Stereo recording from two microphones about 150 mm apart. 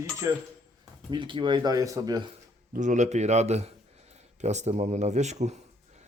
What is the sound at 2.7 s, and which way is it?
Speech, 55° right (ahead or behind).